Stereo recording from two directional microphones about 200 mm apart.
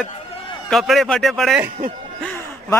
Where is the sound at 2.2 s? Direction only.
10° left (ahead or behind).